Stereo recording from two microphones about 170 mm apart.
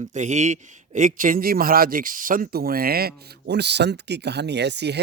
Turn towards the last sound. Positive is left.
turn(degrees=-80)